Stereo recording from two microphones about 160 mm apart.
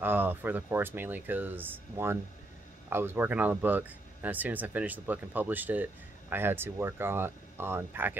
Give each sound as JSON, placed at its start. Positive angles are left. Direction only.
{"t": 0.0, "sound": "speech", "side_deg": -10}